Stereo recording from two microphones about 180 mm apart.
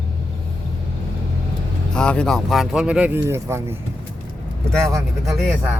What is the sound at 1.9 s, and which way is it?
Speech, 5° left (ahead or behind).